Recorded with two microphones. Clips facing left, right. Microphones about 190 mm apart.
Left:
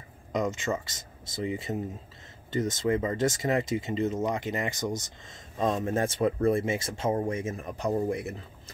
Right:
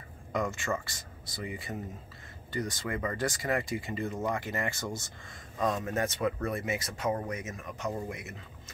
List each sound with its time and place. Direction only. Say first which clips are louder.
0.3 s speech: left 3 dB; 20° left (ahead or behind)